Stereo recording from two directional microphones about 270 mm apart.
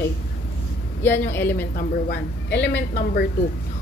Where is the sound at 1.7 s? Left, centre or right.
Left.